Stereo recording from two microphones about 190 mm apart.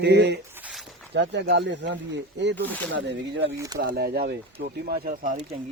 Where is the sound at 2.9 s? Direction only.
70° right (ahead or behind).